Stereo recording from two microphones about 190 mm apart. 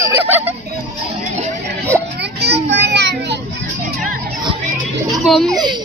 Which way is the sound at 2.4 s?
65° right (ahead or behind).